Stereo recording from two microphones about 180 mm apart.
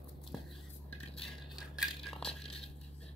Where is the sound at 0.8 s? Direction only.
5° left (ahead or behind).